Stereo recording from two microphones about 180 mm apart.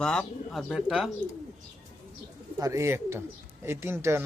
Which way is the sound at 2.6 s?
15° right (ahead or behind).